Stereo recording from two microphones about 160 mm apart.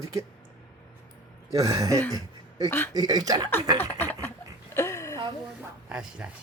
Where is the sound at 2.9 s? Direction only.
25° right (ahead or behind).